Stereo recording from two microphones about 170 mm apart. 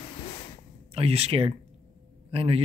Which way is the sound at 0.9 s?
35° right (ahead or behind).